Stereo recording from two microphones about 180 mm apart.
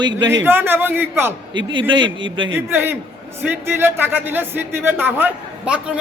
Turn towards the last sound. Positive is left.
turn(degrees=-5)  # may be behind; listen again after turning